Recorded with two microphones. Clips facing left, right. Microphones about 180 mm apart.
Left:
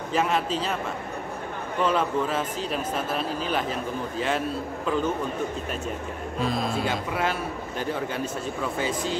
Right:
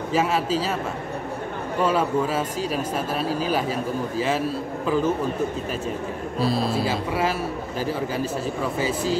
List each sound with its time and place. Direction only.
0.1 s a man's voice: 5° right (ahead or behind)
1.8 s speech: 5° right (ahead or behind)
4.8 s a man's voice: 5° right (ahead or behind)
6.4 s speech: 35° right (ahead or behind)
6.9 s a man's voice: 5° right (ahead or behind)
8.7 s a man's voice: 5° right (ahead or behind)